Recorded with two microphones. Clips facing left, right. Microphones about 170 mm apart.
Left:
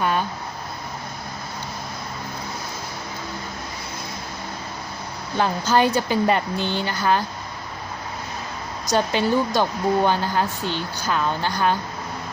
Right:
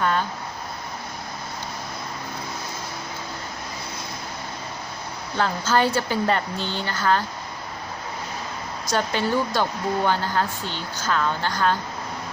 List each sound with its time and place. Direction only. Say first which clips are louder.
0.0 s a sound: left 1 dB; 15° left (ahead or behind)
5.4 s a woman's voice: left 2 dB; 15° left (ahead or behind)
8.9 s a woman's voice: left 3 dB; 15° left (ahead or behind)